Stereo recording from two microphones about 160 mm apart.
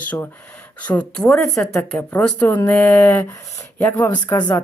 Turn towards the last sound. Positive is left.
turn(degrees=25)  # may be behind; listen again after turning